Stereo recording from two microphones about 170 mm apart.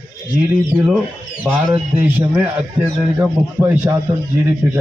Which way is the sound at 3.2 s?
15° right (ahead or behind).